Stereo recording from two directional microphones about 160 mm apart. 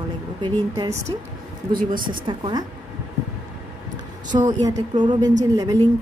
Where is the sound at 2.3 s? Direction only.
25° right (ahead or behind).